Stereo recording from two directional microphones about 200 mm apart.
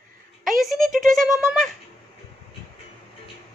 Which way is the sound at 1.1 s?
Centre (ahead or behind).